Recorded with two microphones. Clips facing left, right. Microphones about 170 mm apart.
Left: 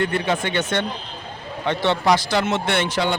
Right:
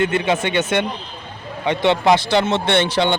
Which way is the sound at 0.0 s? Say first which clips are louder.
Right 3 dB; 20° right (ahead or behind).